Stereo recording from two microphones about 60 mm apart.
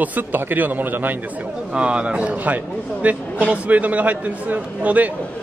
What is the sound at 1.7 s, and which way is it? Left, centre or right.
A man's voice, centre.